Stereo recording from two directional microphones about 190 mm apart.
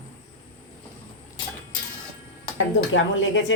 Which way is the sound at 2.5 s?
80° left.